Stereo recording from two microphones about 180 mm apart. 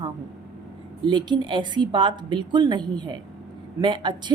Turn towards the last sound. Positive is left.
turn(degrees=-25)  # may be behind; listen again after turning